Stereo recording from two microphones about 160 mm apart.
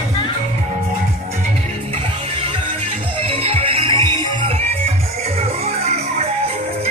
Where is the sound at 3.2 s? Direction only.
35° right (ahead or behind).